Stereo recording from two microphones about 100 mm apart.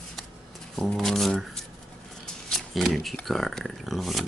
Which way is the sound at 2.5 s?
Centre (ahead or behind).